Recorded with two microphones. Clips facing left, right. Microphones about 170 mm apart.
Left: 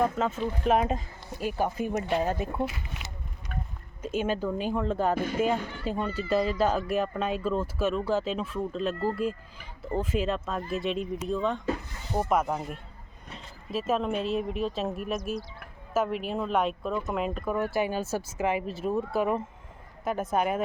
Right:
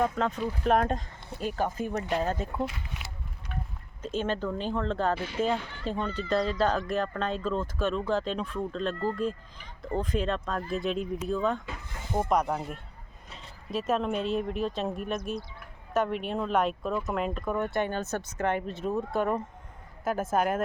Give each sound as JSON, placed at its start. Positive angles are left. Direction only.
{"t": 0.0, "sound": "speech", "side_deg": 5}
{"t": 3.5, "sound": "music", "side_deg": 45}
{"t": 4.0, "sound": "speech", "side_deg": 10}
{"t": 5.1, "sound": "speech", "side_deg": 45}
{"t": 5.8, "sound": "speech", "side_deg": 10}